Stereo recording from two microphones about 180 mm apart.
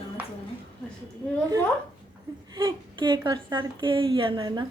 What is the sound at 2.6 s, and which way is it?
A woman's voice, 25° right (ahead or behind).